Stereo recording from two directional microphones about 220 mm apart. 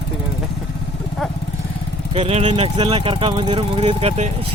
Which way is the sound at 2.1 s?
30° right (ahead or behind).